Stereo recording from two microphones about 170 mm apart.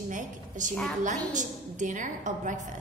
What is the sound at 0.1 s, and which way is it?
A woman's voice, 50° right (ahead or behind).